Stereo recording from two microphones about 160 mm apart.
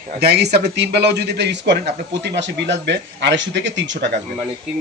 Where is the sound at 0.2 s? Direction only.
90° right.